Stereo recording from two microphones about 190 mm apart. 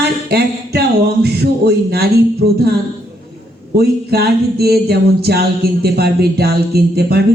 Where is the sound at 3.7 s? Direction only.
55° right (ahead or behind).